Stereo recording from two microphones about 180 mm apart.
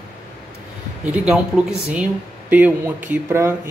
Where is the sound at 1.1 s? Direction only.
5° right (ahead or behind).